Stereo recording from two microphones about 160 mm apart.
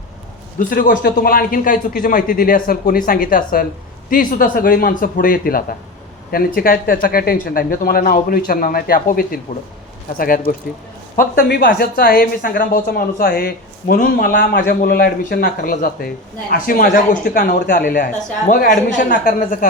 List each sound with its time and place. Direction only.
0.7 s speech: 65° left (ahead or behind)